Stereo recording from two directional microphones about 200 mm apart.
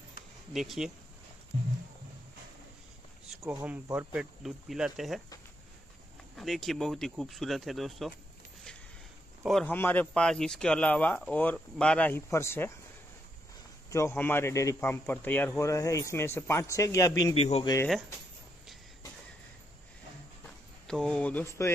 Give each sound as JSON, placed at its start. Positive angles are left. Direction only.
{"t": 0.5, "sound": "speech", "side_deg": 0}
{"t": 3.3, "sound": "speech", "side_deg": -10}
{"t": 6.3, "sound": "speech", "side_deg": 0}
{"t": 9.4, "sound": "speech", "side_deg": 0}
{"t": 13.8, "sound": "speech", "side_deg": 15}
{"t": 17.2, "sound": "speech", "side_deg": 30}
{"t": 20.8, "sound": "speech", "side_deg": 5}